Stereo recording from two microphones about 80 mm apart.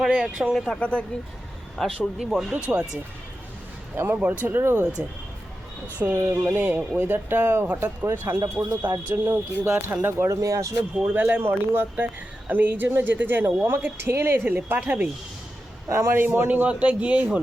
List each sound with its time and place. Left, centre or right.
0.0 s a man's voice: centre
0.7 s speech: centre
1.8 s a man's voice: centre; by 4.8 s right
4.8 s a man's voice: centre
6.1 s a man's voice: right
6.4 s speech: right
8.6 s a man's voice: centre
9.0 s speech: right
10.2 s speech: right
11.1 s speech: right
15.9 s a man's voice: right
16.2 s speech: right
16.6 s a man's voice: centre